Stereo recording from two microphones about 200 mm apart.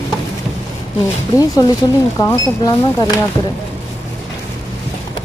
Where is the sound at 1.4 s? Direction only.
20° left (ahead or behind).